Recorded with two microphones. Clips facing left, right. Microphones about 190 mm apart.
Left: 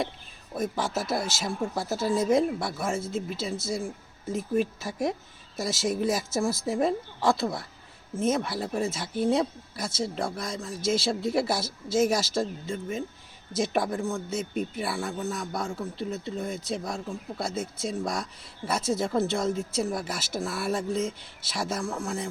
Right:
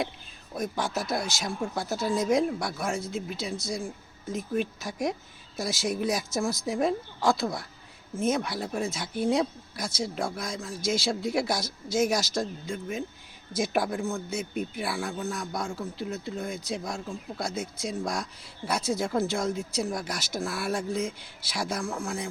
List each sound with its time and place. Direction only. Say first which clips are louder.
0.5 s speech: left 1 dB; centre (ahead or behind)